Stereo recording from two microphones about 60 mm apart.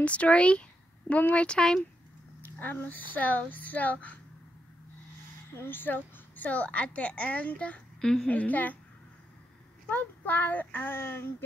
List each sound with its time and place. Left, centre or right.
0.0 s speech: left
2.4 s a child's voice: left
5.5 s a child's voice: left
8.0 s a woman's voice: centre
8.3 s a child's voice: left
9.8 s speech: left